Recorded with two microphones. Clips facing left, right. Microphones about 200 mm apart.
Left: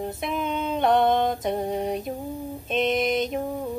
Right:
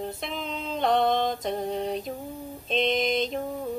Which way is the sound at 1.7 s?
10° left (ahead or behind).